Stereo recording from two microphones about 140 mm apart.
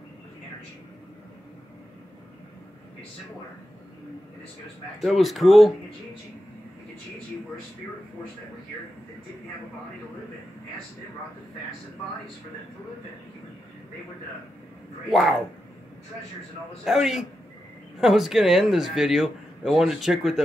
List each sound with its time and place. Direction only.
5.0 s speech: centre (ahead or behind)
15.0 s speech: centre (ahead or behind)
16.8 s speech: 5° right (ahead or behind)